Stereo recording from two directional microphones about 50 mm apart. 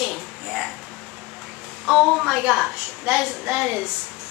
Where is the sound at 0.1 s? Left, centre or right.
Centre.